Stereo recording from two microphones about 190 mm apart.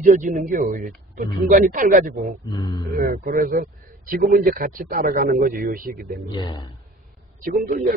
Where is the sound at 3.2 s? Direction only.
50° right (ahead or behind).